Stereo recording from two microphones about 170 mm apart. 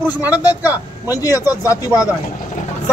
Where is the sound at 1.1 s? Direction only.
20° left (ahead or behind).